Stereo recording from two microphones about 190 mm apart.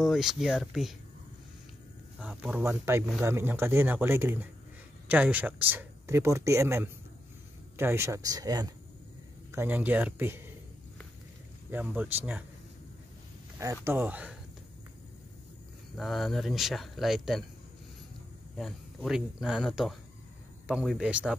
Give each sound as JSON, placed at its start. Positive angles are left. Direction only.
{"t": 0.0, "sound": "speech", "side_deg": 0}
{"t": 2.1, "sound": "speech", "side_deg": -5}
{"t": 11.7, "sound": "speech", "side_deg": -10}
{"t": 13.8, "sound": "speech", "side_deg": -10}
{"t": 16.0, "sound": "speech", "side_deg": 0}
{"t": 18.6, "sound": "speech", "side_deg": 0}